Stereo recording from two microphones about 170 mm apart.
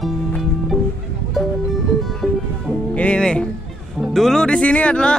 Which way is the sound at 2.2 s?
5° left (ahead or behind).